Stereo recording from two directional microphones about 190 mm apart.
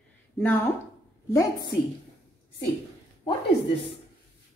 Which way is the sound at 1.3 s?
15° left (ahead or behind).